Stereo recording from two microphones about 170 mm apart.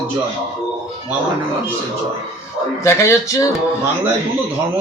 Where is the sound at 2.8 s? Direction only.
15° left (ahead or behind).